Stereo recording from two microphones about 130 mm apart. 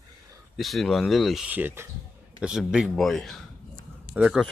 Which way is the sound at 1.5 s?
15° right (ahead or behind).